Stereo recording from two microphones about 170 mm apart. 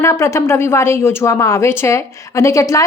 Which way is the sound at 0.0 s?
15° left (ahead or behind).